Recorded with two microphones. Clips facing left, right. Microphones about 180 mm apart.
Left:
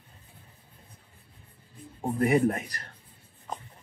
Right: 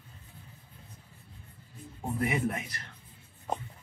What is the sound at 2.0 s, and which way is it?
Speech, 35° left (ahead or behind).